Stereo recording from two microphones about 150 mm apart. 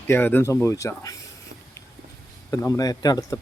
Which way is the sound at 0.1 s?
15° left (ahead or behind).